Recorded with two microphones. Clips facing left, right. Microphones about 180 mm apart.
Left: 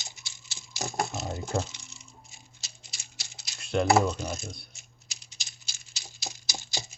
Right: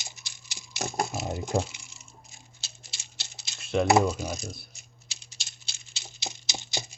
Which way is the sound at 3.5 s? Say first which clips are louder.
Right 1 dB; centre (ahead or behind).